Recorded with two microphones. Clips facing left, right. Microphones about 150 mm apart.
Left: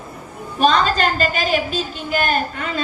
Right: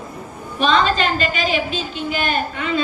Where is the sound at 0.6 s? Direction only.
45° left (ahead or behind).